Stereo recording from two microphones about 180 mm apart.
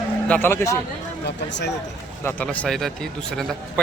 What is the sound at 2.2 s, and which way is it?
Speech, 10° left (ahead or behind).